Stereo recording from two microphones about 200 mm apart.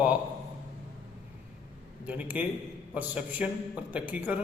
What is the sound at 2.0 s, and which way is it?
A man's voice, 10° right (ahead or behind).